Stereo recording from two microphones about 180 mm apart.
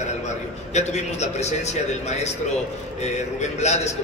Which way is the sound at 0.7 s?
40° left (ahead or behind).